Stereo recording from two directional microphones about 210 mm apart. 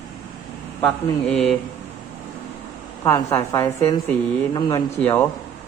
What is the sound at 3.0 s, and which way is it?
Speech, 10° left (ahead or behind).